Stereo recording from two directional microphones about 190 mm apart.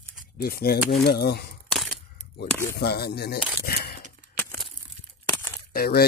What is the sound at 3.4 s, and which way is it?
Speech, 10° right (ahead or behind).